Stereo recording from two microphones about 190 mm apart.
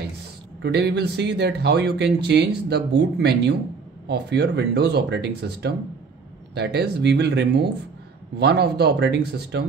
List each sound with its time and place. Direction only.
0.6 s speech: 65° right (ahead or behind)